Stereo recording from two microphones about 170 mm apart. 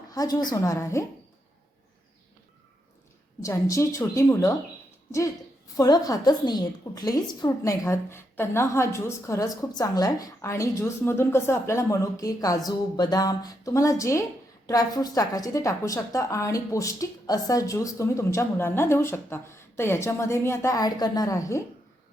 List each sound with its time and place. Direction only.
0.1 s a woman's voice: 20° left (ahead or behind)
3.4 s a woman's voice: 20° left (ahead or behind)
5.7 s a woman's voice: 20° left (ahead or behind)